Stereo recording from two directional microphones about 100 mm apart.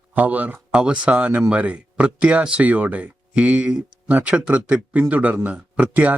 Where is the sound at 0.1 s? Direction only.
15° right (ahead or behind).